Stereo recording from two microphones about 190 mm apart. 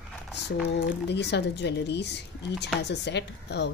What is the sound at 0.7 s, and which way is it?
Speech, 65° left (ahead or behind).